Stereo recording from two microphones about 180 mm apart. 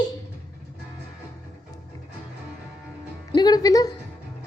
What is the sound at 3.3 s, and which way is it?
Music, 25° left (ahead or behind).